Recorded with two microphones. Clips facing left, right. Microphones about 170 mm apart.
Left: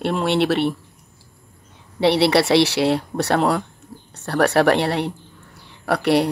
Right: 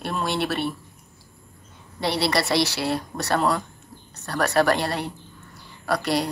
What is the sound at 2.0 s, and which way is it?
Speech, 70° left (ahead or behind).